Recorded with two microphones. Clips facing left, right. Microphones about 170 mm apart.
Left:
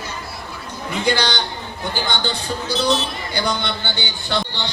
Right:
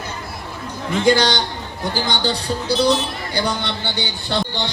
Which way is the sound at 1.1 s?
45° right (ahead or behind).